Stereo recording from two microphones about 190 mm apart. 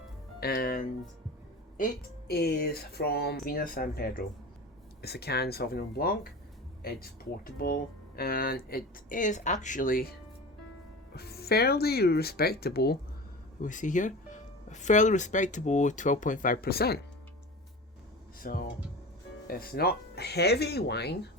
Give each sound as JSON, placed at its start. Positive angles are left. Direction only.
{"t": 0.3, "sound": "speech", "side_deg": 55}
{"t": 13.6, "sound": "speech", "side_deg": 40}
{"t": 18.4, "sound": "speech", "side_deg": 45}